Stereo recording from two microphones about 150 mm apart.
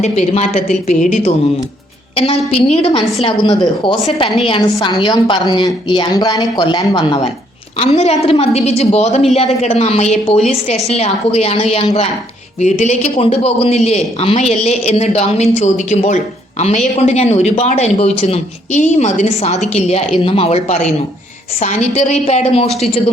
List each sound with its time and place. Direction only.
0.0 s a man's voice: 45° left (ahead or behind)
0.9 s a woman's voice: 55° left (ahead or behind)
2.5 s a woman's voice: 40° left (ahead or behind)
7.8 s a man's voice: 45° left (ahead or behind)